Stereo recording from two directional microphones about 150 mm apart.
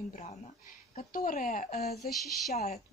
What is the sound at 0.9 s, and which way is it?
A woman's voice, 70° left (ahead or behind).